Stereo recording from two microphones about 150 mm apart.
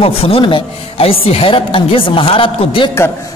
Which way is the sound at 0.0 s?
40° left (ahead or behind).